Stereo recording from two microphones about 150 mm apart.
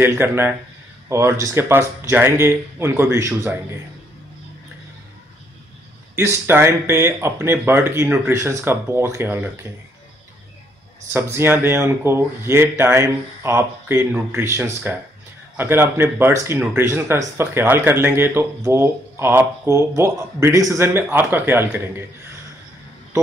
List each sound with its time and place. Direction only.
0.0 s speech: 15° right (ahead or behind)
6.1 s speech: 15° right (ahead or behind)
11.1 s speech: 15° right (ahead or behind)